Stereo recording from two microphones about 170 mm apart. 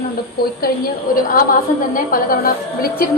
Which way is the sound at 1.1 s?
55° left (ahead or behind).